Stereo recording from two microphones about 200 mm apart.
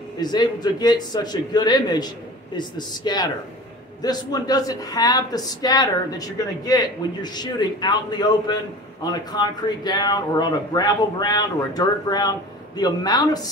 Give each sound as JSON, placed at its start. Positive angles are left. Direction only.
{"t": 0.2, "sound": "speech", "side_deg": 20}